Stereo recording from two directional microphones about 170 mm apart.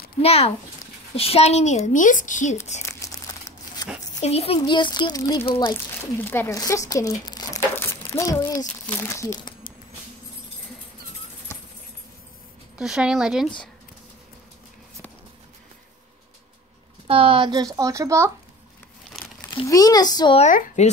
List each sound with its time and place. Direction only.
0.2 s a child's voice: 35° left (ahead or behind)
2.9 s crumpling: 15° left (ahead or behind)
4.2 s a child's voice: 35° left (ahead or behind)
4.6 s speech: 25° left (ahead or behind)
5.9 s speech: 15° left (ahead or behind)
12.7 s speech: 5° right (ahead or behind)
17.1 s speech: 30° right (ahead or behind)
19.6 s speech: 20° left (ahead or behind)
20.3 s a woman's voice: 45° left (ahead or behind)